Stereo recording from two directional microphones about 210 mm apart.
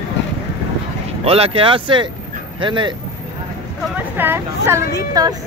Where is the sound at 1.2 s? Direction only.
30° right (ahead or behind).